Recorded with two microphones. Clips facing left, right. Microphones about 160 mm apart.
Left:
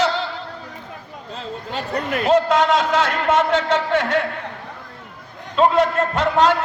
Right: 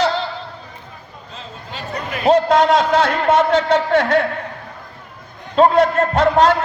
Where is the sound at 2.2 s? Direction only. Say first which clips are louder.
Right 4 dB; 35° right (ahead or behind).